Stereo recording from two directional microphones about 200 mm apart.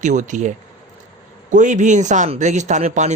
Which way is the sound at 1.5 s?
40° right (ahead or behind).